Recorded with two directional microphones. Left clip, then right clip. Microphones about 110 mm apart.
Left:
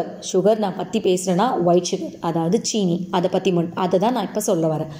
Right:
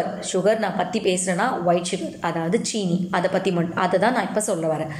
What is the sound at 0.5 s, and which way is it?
Speech, 25° right (ahead or behind).